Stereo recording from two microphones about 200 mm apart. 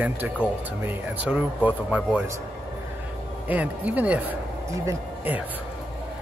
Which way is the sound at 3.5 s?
10° right (ahead or behind).